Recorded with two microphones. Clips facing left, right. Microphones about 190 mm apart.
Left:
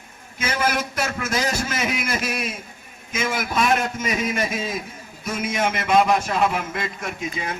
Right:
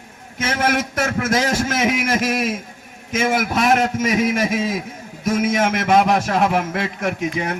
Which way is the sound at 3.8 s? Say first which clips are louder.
Right 6 dB; 85° right.